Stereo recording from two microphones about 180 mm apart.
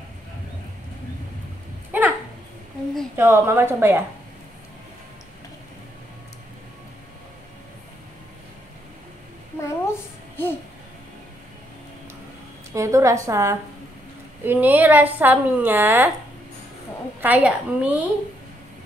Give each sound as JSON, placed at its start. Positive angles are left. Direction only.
{"t": 1.9, "sound": "a sound", "side_deg": -10}
{"t": 3.2, "sound": "a woman's voice", "side_deg": -15}
{"t": 9.6, "sound": "babbling", "side_deg": 15}
{"t": 12.7, "sound": "a woman's voice", "side_deg": -15}
{"t": 17.2, "sound": "a woman's voice", "side_deg": -10}